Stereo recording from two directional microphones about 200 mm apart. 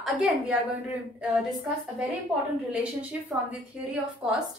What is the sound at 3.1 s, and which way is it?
A woman's voice, 10° right (ahead or behind).